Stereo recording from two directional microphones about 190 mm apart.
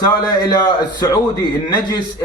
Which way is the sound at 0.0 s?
20° left (ahead or behind).